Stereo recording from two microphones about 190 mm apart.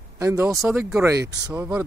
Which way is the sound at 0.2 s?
15° right (ahead or behind).